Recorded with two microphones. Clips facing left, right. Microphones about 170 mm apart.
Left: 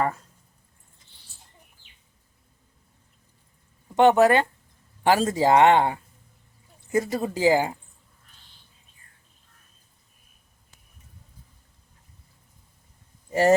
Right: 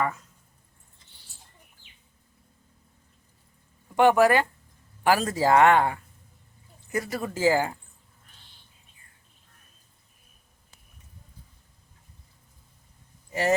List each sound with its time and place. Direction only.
0.0 s speech: 35° left (ahead or behind)
3.9 s speech: 25° left (ahead or behind)